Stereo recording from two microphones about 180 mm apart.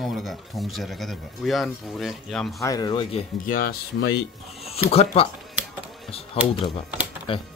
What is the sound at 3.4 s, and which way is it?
Speech, 55° left (ahead or behind).